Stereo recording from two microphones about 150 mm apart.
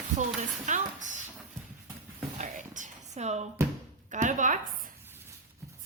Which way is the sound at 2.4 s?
55° right (ahead or behind).